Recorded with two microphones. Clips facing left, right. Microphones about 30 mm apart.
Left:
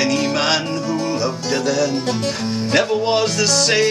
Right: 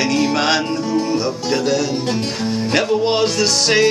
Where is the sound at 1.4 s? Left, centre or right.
Centre.